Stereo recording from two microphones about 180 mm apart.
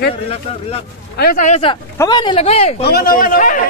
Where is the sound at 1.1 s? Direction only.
55° left (ahead or behind).